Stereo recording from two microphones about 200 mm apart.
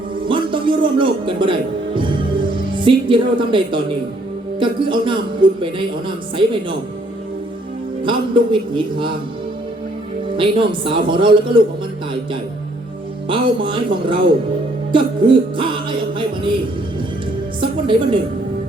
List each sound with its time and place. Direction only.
0.3 s speech: 25° right (ahead or behind)
2.0 s music: 25° right (ahead or behind)
4.6 s a man's voice: 25° right (ahead or behind)
8.0 s a man's voice: 25° right (ahead or behind)
10.3 s a man's voice: 25° right (ahead or behind)
13.2 s a man's voice: 25° right (ahead or behind)
17.6 s a man's voice: 25° right (ahead or behind)